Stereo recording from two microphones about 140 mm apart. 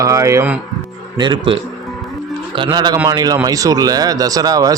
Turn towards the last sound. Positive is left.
turn(degrees=-25)  # may be behind; listen again after turning